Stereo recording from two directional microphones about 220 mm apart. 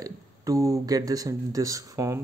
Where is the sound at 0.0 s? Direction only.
15° right (ahead or behind).